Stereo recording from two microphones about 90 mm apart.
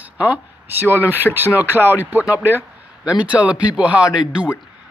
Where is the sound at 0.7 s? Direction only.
25° right (ahead or behind).